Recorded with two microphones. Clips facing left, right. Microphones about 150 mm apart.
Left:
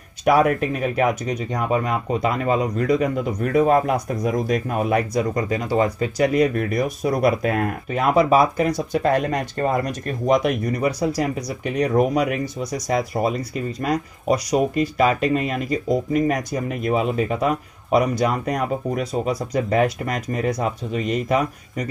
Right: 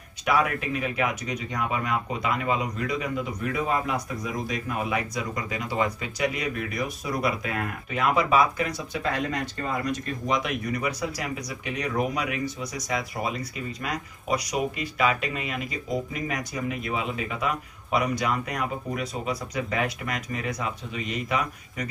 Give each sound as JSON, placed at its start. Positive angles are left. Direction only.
{"t": 0.2, "sound": "speech", "side_deg": 45}